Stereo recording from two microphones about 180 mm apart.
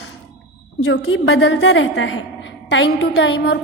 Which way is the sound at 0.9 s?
90° left.